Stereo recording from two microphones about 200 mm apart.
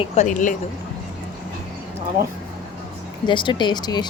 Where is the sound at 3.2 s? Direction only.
25° left (ahead or behind).